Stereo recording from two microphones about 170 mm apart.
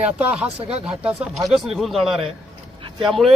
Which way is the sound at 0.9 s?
5° right (ahead or behind).